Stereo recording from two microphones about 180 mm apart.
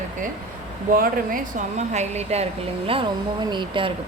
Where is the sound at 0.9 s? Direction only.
50° right (ahead or behind); by 2.4 s 35° right (ahead or behind).